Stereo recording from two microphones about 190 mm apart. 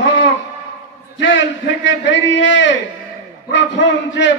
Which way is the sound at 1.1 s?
75° left (ahead or behind).